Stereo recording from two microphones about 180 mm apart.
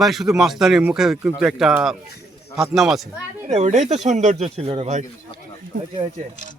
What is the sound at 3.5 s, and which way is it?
Speech, 40° right (ahead or behind).